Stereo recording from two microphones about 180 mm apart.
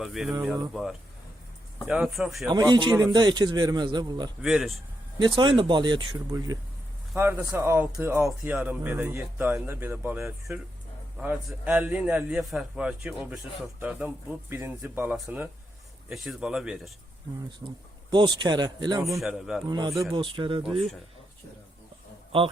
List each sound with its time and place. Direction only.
0.0 s speech: centre (ahead or behind)
2.5 s a man's voice: 25° right (ahead or behind)
4.4 s speech: centre (ahead or behind)
5.2 s a man's voice: 25° right (ahead or behind); by 16.9 s 5° right (ahead or behind)
17.6 s a man's voice: 20° right (ahead or behind)
19.2 s speech: centre (ahead or behind)
19.6 s a man's voice: 25° right (ahead or behind)
22.3 s a man's voice: 30° right (ahead or behind)